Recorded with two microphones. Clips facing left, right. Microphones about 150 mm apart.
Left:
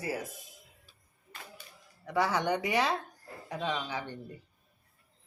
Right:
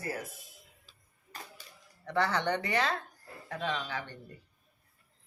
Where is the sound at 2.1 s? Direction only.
10° left (ahead or behind).